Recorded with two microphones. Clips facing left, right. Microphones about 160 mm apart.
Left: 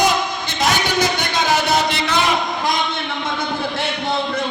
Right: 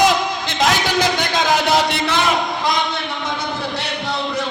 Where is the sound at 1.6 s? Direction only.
90° right.